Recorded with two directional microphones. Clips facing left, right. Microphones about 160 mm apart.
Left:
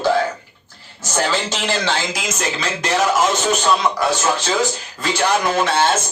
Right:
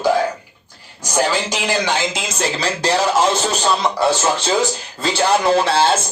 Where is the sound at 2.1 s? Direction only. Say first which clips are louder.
Right 1 dB; 35° right (ahead or behind).